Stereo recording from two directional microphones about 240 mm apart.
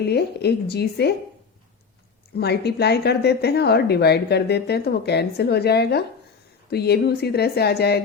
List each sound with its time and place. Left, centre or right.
0.0 s a woman's voice: left
2.3 s a woman's voice: left